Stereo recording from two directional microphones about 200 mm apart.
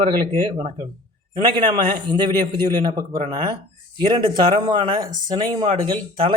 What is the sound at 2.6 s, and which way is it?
Speech, 20° right (ahead or behind).